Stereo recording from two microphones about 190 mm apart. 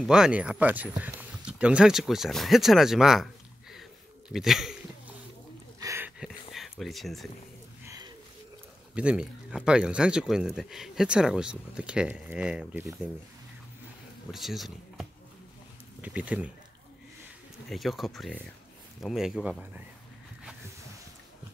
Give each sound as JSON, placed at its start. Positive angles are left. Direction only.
{"t": 0.0, "sound": "speech", "side_deg": -5}
{"t": 4.3, "sound": "speech", "side_deg": 0}
{"t": 5.8, "sound": "a sound", "side_deg": -15}
{"t": 7.8, "sound": "a sound", "side_deg": -15}
{"t": 8.9, "sound": "speech", "side_deg": -5}
{"t": 14.3, "sound": "speech", "side_deg": 0}
{"t": 17.6, "sound": "speech", "side_deg": 0}